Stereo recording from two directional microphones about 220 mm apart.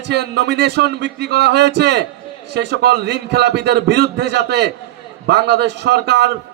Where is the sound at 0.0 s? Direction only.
50° right (ahead or behind).